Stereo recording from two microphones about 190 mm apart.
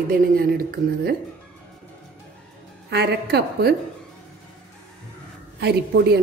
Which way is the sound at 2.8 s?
60° right (ahead or behind).